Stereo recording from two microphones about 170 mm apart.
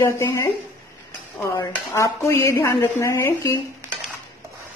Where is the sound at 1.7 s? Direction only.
15° left (ahead or behind).